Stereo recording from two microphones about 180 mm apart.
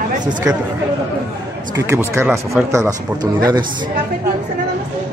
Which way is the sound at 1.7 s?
15° right (ahead or behind).